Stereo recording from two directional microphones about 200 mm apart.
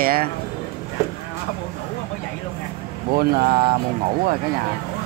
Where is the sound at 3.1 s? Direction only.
50° right (ahead or behind).